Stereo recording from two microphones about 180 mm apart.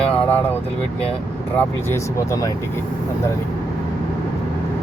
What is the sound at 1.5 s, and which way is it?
Speech, 15° left (ahead or behind).